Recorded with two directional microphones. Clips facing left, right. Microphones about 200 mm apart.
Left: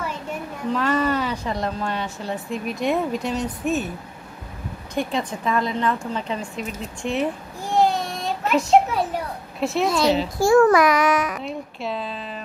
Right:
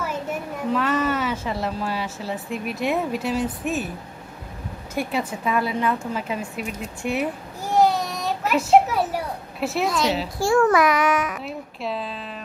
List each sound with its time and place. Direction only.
0.3 s a child's voice: 5° right (ahead or behind)
4.9 s a woman's voice: 10° right (ahead or behind)
8.5 s a sound: 5° right (ahead or behind)
9.8 s a child's voice: 30° left (ahead or behind)
11.4 s speech: centre (ahead or behind)